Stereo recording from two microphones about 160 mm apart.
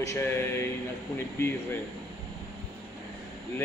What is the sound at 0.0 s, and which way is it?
A man's voice, 15° left (ahead or behind).